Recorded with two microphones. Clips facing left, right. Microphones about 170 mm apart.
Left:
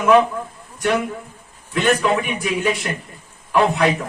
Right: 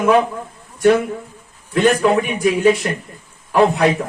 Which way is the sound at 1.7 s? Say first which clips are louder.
Right 4 dB; 35° right (ahead or behind).